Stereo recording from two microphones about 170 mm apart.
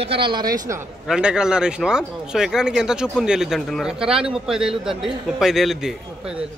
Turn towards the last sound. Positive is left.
turn(degrees=-5)  # may be behind; listen again after turning